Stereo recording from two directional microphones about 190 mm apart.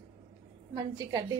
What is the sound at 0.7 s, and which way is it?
Speech, 20° right (ahead or behind).